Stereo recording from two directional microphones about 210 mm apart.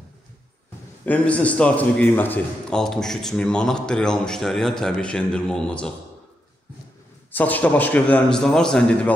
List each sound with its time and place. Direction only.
1.0 s a man's voice: 5° left (ahead or behind)
7.3 s a man's voice: 10° left (ahead or behind)